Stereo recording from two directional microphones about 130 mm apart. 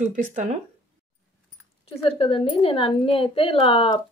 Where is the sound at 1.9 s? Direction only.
45° left (ahead or behind).